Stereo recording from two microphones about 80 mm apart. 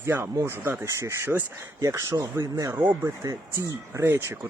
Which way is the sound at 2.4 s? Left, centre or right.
Right.